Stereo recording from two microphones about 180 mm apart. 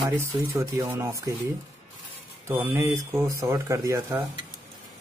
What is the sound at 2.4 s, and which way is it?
Speech, 15° right (ahead or behind).